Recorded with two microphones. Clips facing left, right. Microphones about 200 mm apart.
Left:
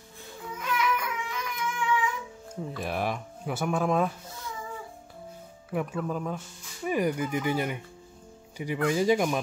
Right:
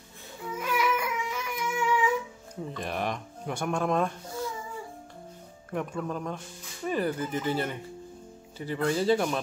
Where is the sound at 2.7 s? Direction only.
5° left (ahead or behind).